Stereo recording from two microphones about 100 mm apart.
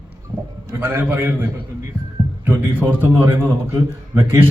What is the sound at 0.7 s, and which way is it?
A man's voice, 20° right (ahead or behind).